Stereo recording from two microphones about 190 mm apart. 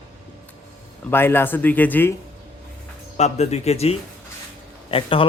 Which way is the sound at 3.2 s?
35° left (ahead or behind).